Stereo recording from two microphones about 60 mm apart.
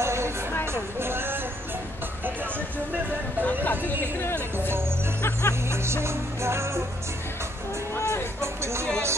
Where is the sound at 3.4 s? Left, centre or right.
Left.